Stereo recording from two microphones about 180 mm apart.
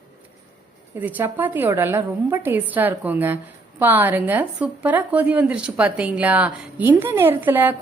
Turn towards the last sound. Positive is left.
turn(degrees=-10)  # may be behind; listen again after turning